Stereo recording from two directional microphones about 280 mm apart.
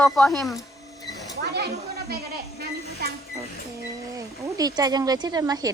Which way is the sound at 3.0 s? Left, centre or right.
Right.